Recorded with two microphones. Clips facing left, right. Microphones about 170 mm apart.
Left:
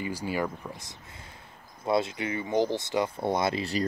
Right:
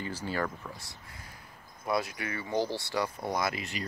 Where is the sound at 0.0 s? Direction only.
10° left (ahead or behind).